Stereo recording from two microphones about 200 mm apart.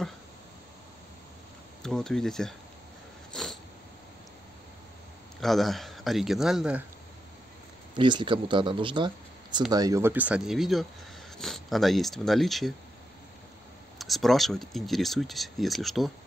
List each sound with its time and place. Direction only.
1.8 s speech: centre (ahead or behind)
5.4 s speech: centre (ahead or behind)
7.9 s speech: 25° right (ahead or behind); by 12.7 s centre (ahead or behind)
13.9 s speech: centre (ahead or behind)